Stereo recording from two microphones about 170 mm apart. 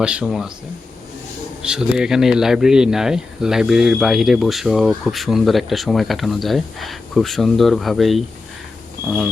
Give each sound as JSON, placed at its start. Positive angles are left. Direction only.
{"t": 0.0, "sound": "speech", "side_deg": -5}
{"t": 1.6, "sound": "speech", "side_deg": -5}